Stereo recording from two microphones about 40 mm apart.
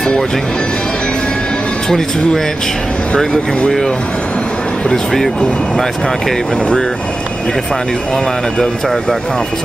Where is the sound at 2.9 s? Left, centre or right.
Left.